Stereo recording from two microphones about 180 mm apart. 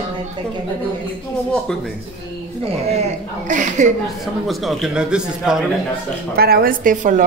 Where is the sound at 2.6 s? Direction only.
35° right (ahead or behind).